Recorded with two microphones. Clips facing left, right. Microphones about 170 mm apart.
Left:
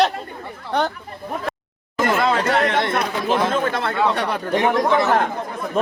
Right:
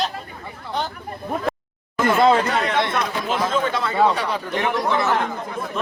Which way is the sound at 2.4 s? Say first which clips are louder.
Left 4 dB; 75° left (ahead or behind).